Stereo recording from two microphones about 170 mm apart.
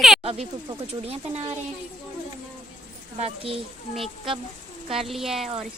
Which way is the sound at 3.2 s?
35° right (ahead or behind).